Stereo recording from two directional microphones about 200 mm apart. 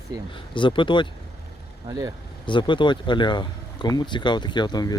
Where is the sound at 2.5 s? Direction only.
25° left (ahead or behind).